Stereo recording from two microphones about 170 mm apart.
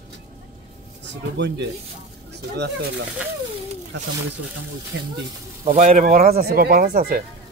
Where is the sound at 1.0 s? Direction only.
90° right.